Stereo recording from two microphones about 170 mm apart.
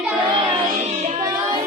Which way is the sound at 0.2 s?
30° right (ahead or behind).